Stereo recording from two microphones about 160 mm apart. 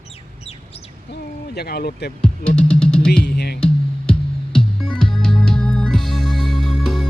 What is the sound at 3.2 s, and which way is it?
Music, 85° left.